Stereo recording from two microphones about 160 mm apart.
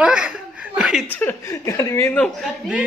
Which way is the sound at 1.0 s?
10° left (ahead or behind).